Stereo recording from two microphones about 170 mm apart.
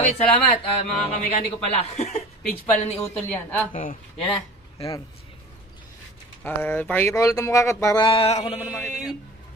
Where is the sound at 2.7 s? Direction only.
40° left (ahead or behind).